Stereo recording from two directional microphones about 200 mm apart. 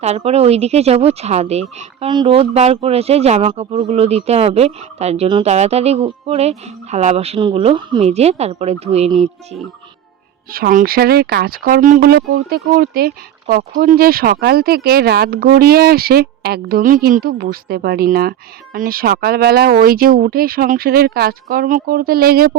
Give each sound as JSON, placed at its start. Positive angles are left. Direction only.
{"t": 0.0, "sound": "speech", "side_deg": -30}
{"t": 10.5, "sound": "speech", "side_deg": -45}